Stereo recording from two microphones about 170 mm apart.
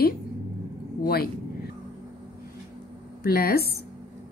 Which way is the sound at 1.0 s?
60° left (ahead or behind).